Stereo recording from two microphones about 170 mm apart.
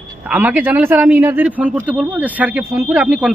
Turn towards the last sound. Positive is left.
turn(degrees=-5)  # may be behind; listen again after turning